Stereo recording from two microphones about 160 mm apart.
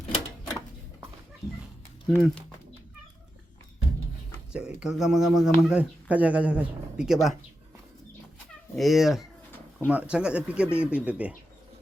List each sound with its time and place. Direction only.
2.0 s speech: 5° left (ahead or behind)
4.5 s speech: 5° right (ahead or behind)
8.7 s speech: centre (ahead or behind)